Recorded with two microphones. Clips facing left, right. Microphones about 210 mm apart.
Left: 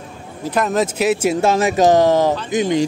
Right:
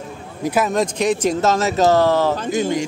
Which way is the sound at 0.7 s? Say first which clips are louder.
Left 1 dB; 5° left (ahead or behind).